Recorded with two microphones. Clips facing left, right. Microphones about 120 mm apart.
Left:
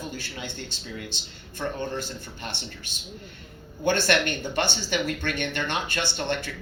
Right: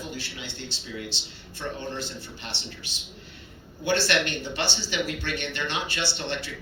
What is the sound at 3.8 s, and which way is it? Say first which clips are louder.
Speech: left 2 dB; 45° left (ahead or behind).